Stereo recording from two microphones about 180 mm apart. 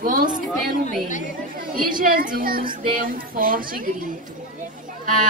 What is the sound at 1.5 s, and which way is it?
A woman's voice, 55° right (ahead or behind).